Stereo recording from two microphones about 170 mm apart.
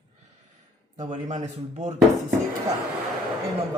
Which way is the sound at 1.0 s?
45° right (ahead or behind).